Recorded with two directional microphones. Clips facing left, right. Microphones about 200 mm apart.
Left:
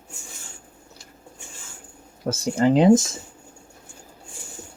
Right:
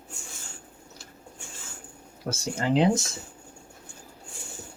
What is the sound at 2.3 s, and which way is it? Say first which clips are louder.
Speech: left 8 dB; 45° left (ahead or behind).